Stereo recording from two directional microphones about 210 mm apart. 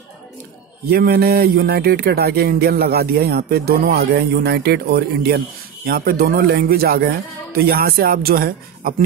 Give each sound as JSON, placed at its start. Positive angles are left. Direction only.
{"t": 0.8, "sound": "speech", "side_deg": -45}